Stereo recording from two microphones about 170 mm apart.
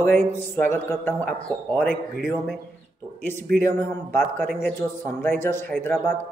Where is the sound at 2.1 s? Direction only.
Centre (ahead or behind).